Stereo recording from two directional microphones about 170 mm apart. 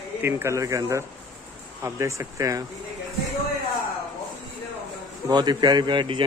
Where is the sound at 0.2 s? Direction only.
15° right (ahead or behind).